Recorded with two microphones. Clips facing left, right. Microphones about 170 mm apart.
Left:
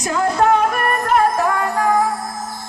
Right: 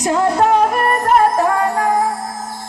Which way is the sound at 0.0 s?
30° right (ahead or behind).